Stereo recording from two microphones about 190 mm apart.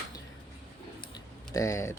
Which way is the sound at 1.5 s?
15° left (ahead or behind).